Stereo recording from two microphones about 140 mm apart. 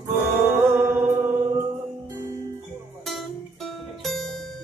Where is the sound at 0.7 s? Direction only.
15° right (ahead or behind).